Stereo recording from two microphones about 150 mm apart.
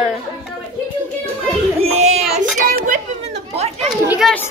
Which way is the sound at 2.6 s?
70° right (ahead or behind).